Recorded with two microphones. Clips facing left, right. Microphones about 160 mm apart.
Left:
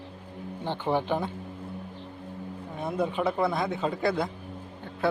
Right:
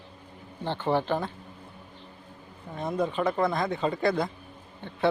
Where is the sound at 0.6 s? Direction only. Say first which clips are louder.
Right 1 dB; 15° left (ahead or behind).